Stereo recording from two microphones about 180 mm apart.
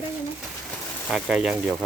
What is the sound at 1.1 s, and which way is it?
Speech, 5° right (ahead or behind).